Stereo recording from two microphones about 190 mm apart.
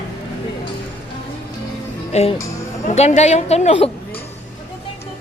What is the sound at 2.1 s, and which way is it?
A woman's voice, 35° left (ahead or behind).